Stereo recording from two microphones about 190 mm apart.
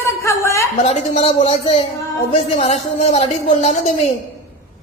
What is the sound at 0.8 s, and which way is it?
Speech, 35° left (ahead or behind).